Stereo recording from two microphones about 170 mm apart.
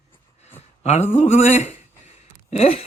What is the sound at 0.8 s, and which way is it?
Speech, 40° left (ahead or behind).